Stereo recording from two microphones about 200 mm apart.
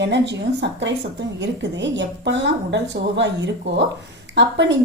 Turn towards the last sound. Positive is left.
turn(degrees=-65)  # may be behind; listen again after turning